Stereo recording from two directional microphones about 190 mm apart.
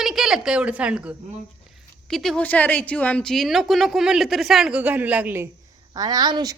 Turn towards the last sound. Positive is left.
turn(degrees=-20)  # may be behind; listen again after turning